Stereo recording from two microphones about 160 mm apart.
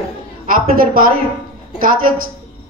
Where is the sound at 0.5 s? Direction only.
60° right (ahead or behind).